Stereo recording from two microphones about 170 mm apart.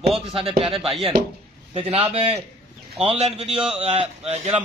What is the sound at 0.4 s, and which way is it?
Speech, 35° right (ahead or behind).